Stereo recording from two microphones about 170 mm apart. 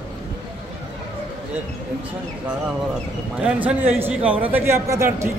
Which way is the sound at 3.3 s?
5° right (ahead or behind).